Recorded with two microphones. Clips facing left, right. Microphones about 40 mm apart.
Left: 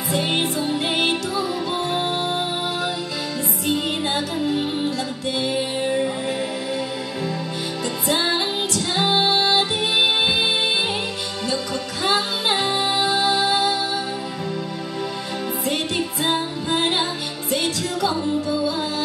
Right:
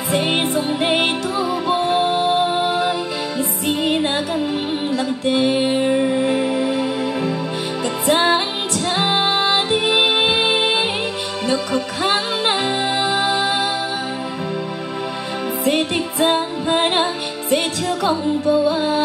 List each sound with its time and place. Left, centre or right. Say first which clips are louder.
0.1 s music: right 4 dB; right
15.6 s music: right 6 dB; right